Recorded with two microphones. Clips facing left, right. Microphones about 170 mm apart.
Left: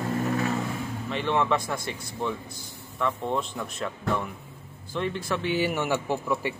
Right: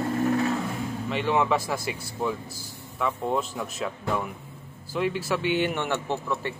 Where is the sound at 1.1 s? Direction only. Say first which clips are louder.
Right 1 dB; 5° right (ahead or behind).